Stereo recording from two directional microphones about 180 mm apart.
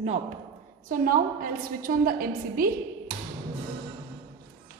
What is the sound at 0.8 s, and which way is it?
A woman's voice, 50° right (ahead or behind).